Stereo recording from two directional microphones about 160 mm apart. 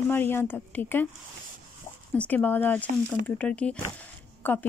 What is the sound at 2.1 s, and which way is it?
Speech, 10° left (ahead or behind).